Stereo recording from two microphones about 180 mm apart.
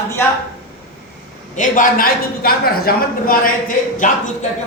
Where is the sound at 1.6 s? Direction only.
50° left (ahead or behind).